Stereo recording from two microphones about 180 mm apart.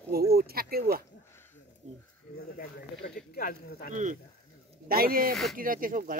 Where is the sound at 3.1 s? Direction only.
55° left (ahead or behind).